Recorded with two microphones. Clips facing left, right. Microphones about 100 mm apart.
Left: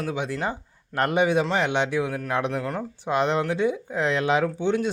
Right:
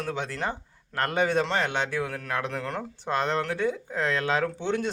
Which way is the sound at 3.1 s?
15° left (ahead or behind).